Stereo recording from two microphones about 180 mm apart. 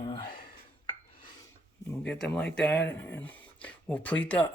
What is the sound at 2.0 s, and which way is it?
Speech, 5° left (ahead or behind).